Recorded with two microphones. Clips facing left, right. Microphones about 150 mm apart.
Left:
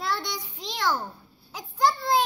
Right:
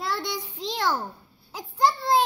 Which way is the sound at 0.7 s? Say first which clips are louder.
Right 1 dB; 30° right (ahead or behind).